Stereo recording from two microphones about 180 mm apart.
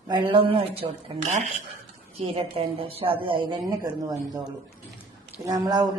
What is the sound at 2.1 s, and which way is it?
A woman's voice, 30° right (ahead or behind).